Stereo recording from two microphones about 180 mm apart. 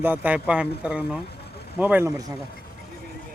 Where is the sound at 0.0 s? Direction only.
10° right (ahead or behind).